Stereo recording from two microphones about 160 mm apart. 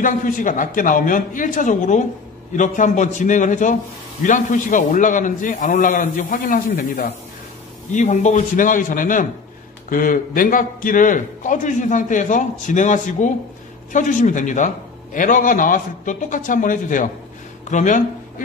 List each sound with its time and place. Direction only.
0.0 s a man's voice: 55° left (ahead or behind)
7.9 s a man's voice: 45° left (ahead or behind)